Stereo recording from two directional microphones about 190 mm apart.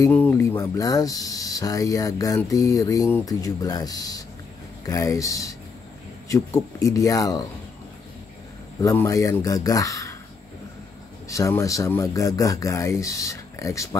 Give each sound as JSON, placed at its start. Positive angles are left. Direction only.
{"t": 0.0, "sound": "speech", "side_deg": 10}
{"t": 8.8, "sound": "speech", "side_deg": 15}
{"t": 11.2, "sound": "speech", "side_deg": 15}